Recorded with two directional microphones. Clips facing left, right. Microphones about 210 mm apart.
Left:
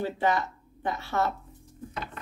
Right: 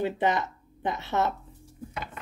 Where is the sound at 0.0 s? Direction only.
20° right (ahead or behind).